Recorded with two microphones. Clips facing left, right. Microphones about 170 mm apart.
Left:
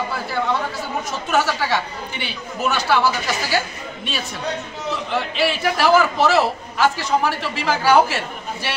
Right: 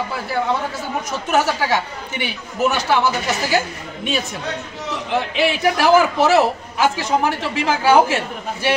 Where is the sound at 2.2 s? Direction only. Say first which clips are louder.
Right 4 dB; 15° right (ahead or behind).